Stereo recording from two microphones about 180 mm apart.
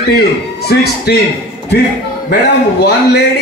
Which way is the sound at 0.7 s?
65° left (ahead or behind).